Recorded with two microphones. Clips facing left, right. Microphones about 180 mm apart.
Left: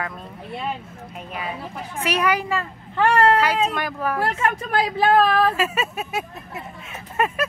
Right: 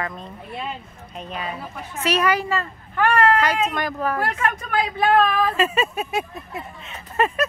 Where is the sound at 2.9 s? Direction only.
25° left (ahead or behind).